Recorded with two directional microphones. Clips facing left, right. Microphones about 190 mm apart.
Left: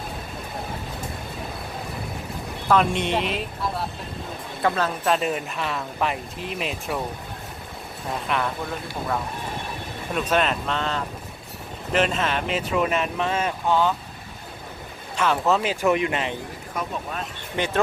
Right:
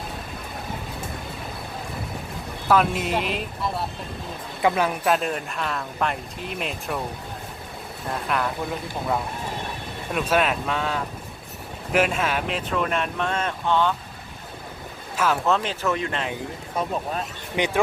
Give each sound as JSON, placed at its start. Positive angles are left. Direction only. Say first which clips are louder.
{"t": 2.6, "sound": "speech", "louder": "even", "side_deg": -5}
{"t": 4.6, "sound": "speech", "louder": "right 2 dB", "side_deg": -15}
{"t": 8.1, "sound": "speech", "louder": "even", "side_deg": 0}
{"t": 10.2, "sound": "speech", "louder": "right 1 dB", "side_deg": -5}
{"t": 15.1, "sound": "speech", "louder": "left 1 dB", "side_deg": -5}
{"t": 16.7, "sound": "speech", "louder": "right 3 dB", "side_deg": -30}
{"t": 17.6, "sound": "speech", "louder": "right 2 dB", "side_deg": -15}